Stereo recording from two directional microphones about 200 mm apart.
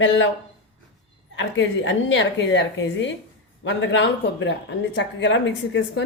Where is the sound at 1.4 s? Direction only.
70° left (ahead or behind).